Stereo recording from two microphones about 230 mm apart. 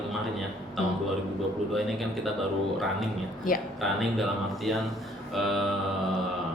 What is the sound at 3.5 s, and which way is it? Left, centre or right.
Speech, left.